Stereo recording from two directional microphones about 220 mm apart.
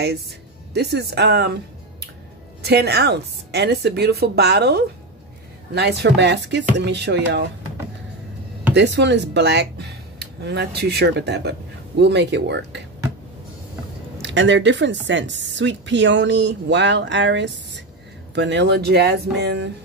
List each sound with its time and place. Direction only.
0.7 s speech: 50° right (ahead or behind)
8.7 s speech: 55° right (ahead or behind)
14.2 s speech: 55° right (ahead or behind)